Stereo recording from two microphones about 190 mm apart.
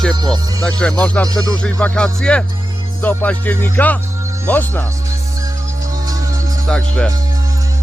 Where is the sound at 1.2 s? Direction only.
20° right (ahead or behind).